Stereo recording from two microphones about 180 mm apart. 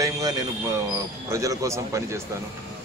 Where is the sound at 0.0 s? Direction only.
20° right (ahead or behind).